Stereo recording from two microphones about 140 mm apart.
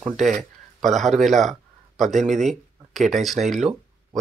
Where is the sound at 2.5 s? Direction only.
Centre (ahead or behind).